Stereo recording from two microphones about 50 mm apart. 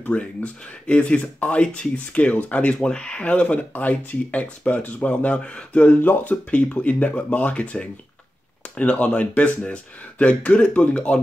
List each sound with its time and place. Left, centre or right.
0.0 s speech: left